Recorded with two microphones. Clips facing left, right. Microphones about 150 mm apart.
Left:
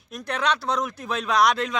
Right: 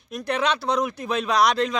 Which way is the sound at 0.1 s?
Centre (ahead or behind).